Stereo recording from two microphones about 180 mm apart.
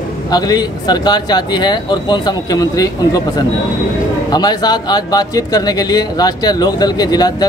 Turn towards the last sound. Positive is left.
turn(degrees=20)  # may be behind; listen again after turning